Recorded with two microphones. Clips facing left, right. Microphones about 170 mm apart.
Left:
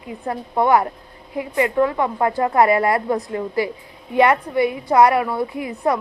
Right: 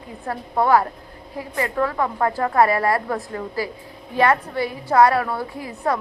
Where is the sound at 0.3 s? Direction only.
20° left (ahead or behind).